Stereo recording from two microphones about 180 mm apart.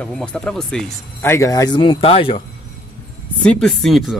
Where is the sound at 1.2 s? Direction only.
15° left (ahead or behind); by 2.4 s 30° left (ahead or behind).